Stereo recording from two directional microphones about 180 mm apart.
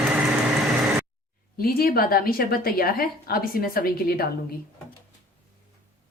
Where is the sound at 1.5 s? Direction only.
60° left (ahead or behind).